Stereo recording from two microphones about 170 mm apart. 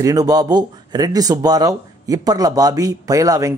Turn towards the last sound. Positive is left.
turn(degrees=-20)  # may be behind; listen again after turning